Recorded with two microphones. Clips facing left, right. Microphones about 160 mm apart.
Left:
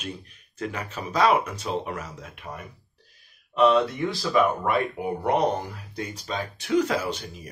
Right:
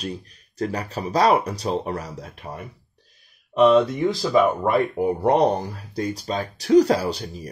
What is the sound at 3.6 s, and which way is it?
Speech, 20° right (ahead or behind).